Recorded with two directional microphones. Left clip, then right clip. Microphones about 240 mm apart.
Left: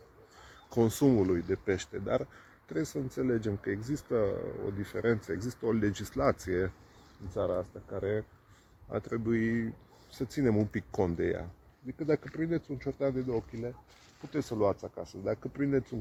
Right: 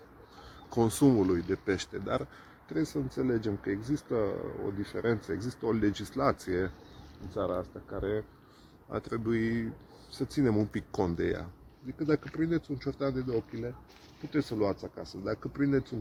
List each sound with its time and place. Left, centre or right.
0.7 s speech: left